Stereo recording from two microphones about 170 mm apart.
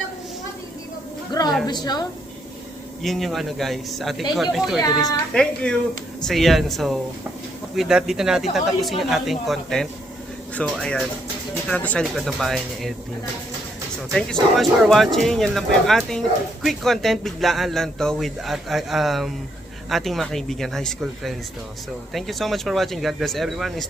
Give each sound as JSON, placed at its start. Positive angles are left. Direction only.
{"t": 1.3, "sound": "a sound", "side_deg": 25}
{"t": 1.6, "sound": "a woman's voice", "side_deg": 25}
{"t": 3.0, "sound": "speech", "side_deg": 0}
{"t": 14.1, "sound": "speech", "side_deg": 5}